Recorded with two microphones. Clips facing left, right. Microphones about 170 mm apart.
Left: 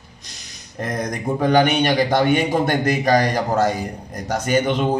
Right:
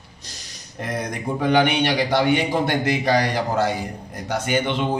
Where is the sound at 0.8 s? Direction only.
45° left (ahead or behind).